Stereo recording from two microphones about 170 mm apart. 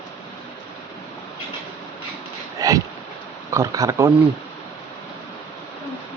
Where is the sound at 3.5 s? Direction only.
20° right (ahead or behind).